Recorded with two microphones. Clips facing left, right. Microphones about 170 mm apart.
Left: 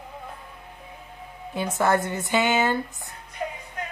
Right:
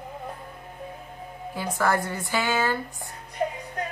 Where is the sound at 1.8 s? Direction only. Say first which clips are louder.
Left 2 dB; 20° left (ahead or behind).